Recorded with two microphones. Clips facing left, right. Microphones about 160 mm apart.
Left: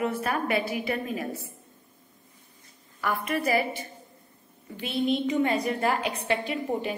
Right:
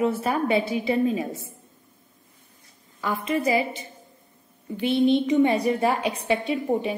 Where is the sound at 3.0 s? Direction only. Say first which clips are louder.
Right 3 dB; 20° right (ahead or behind).